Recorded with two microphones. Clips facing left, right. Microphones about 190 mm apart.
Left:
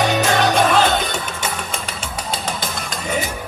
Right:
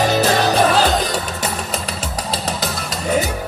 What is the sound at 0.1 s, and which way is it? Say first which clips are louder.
Music: right 1 dB; 35° right (ahead or behind).